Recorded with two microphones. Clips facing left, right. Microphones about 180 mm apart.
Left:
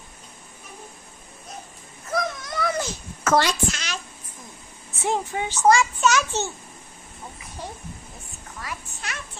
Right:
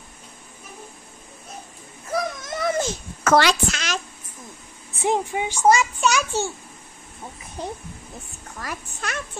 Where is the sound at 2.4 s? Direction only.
20° right (ahead or behind).